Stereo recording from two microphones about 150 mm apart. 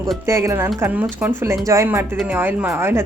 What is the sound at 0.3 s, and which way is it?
Speech, 20° right (ahead or behind).